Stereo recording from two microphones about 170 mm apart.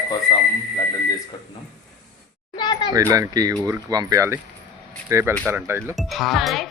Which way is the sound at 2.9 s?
20° right (ahead or behind).